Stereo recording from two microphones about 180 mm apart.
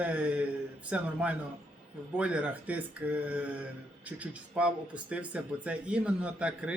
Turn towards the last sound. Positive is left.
turn(degrees=-5)  # may be behind; listen again after turning